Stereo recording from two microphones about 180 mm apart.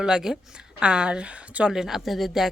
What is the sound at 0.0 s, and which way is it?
Speech, 5° right (ahead or behind).